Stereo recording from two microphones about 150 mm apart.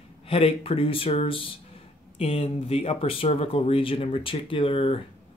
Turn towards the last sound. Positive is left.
turn(degrees=35)  # may be behind; listen again after turning